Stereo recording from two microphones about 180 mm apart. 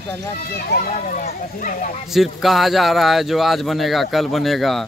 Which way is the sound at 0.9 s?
40° left (ahead or behind).